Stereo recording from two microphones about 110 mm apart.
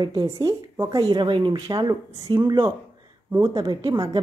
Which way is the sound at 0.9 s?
40° right (ahead or behind).